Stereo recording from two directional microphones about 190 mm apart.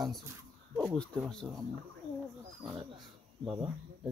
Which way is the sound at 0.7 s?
5° left (ahead or behind).